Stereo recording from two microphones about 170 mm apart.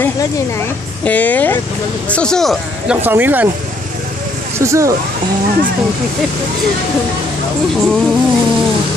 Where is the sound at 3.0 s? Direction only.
10° right (ahead or behind).